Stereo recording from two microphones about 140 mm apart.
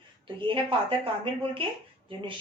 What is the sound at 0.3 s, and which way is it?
A woman's voice, 40° right (ahead or behind).